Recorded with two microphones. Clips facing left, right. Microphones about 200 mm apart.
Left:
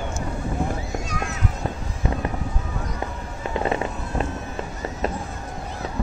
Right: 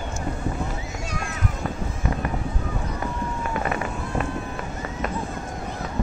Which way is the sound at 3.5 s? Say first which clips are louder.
Left 6 dB; 25° left (ahead or behind).